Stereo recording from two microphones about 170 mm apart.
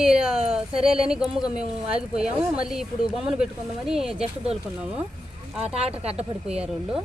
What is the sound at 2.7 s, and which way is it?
Speech, 5° right (ahead or behind).